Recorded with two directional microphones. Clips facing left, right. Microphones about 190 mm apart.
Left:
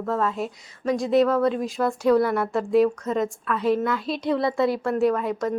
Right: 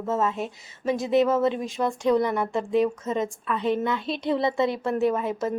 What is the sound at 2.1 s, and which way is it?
Speech, 15° right (ahead or behind).